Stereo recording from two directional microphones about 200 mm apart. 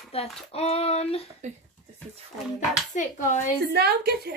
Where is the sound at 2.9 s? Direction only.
40° left (ahead or behind).